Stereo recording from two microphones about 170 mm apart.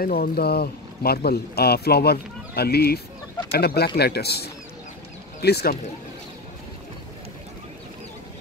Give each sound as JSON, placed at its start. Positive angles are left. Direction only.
{"t": 0.0, "sound": "speech", "side_deg": 60}